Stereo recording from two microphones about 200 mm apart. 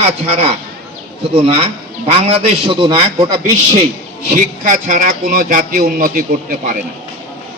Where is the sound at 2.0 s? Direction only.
30° right (ahead or behind).